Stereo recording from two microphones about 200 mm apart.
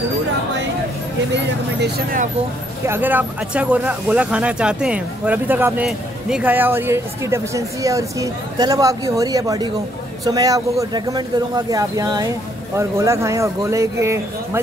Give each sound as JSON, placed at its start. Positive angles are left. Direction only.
{"t": 1.3, "sound": "speech", "side_deg": -55}
{"t": 2.9, "sound": "speech", "side_deg": -10}